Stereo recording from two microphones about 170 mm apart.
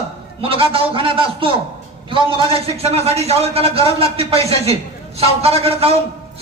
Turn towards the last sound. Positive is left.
turn(degrees=-35)  # may be behind; listen again after turning